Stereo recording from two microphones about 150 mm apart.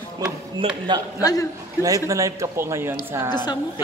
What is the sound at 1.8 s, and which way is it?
A man's voice, 20° right (ahead or behind).